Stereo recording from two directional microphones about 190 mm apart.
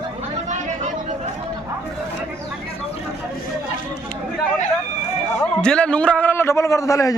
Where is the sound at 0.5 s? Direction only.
40° right (ahead or behind).